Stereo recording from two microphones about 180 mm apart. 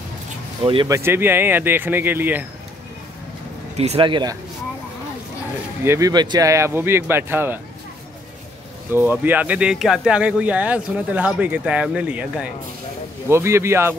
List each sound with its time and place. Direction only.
0.8 s speech: 15° right (ahead or behind)
3.7 s speech: 35° right (ahead or behind)
5.9 s speech: 20° right (ahead or behind)
8.9 s speech: 10° right (ahead or behind)